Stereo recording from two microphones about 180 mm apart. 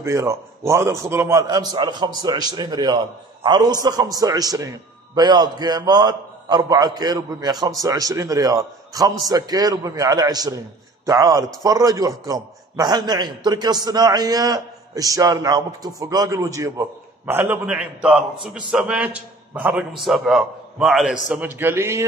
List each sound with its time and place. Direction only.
0.0 s a man's voice: 15° right (ahead or behind)